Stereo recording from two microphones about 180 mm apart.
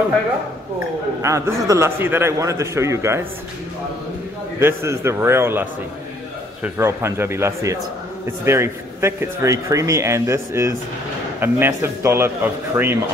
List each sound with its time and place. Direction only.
1.2 s speech: 15° right (ahead or behind)
4.6 s speech: 15° right (ahead or behind)